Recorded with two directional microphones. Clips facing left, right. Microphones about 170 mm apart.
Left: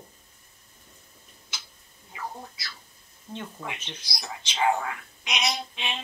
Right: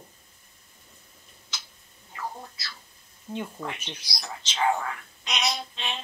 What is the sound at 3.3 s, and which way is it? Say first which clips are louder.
Speech: right 5 dB; 10° right (ahead or behind).